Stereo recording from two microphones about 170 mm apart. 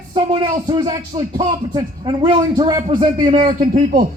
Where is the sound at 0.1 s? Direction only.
30° right (ahead or behind).